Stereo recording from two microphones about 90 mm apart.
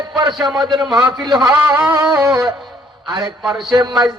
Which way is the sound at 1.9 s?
40° right (ahead or behind).